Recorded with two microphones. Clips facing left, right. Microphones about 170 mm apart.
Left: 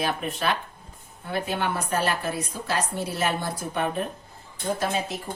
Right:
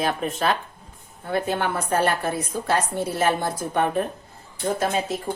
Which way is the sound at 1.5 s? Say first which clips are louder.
Right 2 dB; 50° right (ahead or behind).